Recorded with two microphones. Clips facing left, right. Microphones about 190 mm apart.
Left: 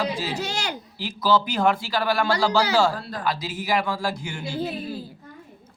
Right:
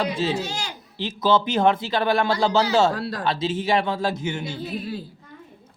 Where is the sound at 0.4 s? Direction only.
70° left (ahead or behind).